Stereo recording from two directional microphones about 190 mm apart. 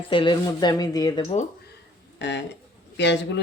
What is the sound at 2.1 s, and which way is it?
Speech, 65° left (ahead or behind).